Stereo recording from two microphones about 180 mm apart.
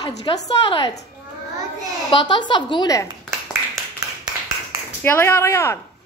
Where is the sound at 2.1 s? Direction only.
25° left (ahead or behind).